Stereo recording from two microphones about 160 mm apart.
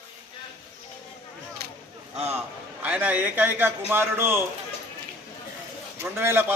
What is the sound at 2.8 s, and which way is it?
A man's voice, 10° right (ahead or behind).